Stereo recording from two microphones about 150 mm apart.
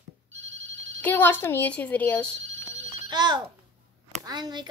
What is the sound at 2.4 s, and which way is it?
Telephone bell ringing, 50° right (ahead or behind).